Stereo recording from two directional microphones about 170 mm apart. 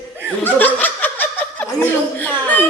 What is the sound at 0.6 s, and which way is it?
Chuckle, 10° left (ahead or behind).